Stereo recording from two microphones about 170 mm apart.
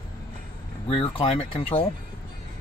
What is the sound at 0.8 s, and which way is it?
Speech, 35° left (ahead or behind).